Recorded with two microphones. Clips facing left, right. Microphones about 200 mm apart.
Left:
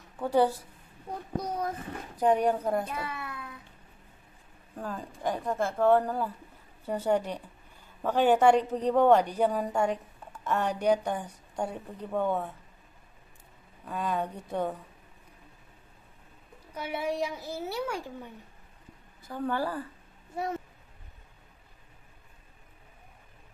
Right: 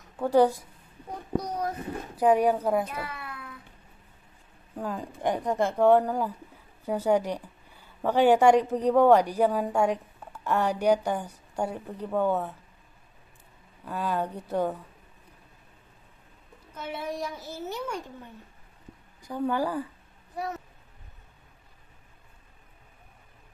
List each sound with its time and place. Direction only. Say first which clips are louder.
0.2 s a woman's voice: right 4 dB; 10° right (ahead or behind)
2.1 s a woman's voice: right 3 dB; 10° right (ahead or behind)
2.9 s a sound: even; 25° left (ahead or behind)
4.7 s a woman's voice: right 4 dB; 10° right (ahead or behind)
13.8 s a woman's voice: right 2 dB; 5° right (ahead or behind)
16.7 s a child's voice: left 2 dB; 10° left (ahead or behind)
19.2 s a woman's voice: right 3 dB; 15° right (ahead or behind)
20.3 s speech: left 1 dB; 25° left (ahead or behind)